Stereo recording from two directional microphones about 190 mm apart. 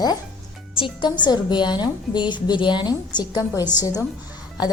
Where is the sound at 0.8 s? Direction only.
25° left (ahead or behind).